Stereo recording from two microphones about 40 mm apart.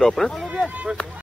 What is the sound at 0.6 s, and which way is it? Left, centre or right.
Speech, right.